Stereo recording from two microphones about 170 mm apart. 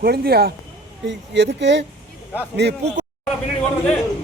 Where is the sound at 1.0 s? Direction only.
90° right.